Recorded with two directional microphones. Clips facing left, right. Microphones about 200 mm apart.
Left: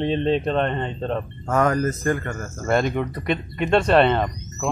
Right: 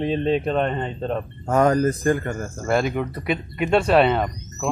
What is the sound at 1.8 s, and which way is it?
Speech, 30° right (ahead or behind).